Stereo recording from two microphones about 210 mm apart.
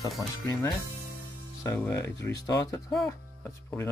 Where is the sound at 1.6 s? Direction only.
15° left (ahead or behind).